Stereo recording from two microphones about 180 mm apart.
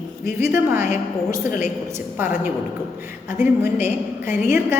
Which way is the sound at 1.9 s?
10° right (ahead or behind).